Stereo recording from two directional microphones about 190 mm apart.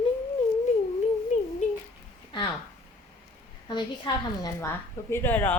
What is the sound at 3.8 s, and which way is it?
A woman's voice, 20° left (ahead or behind).